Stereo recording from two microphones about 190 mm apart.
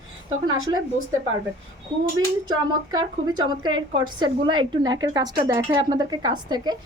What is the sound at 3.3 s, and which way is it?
Speech, 20° right (ahead or behind).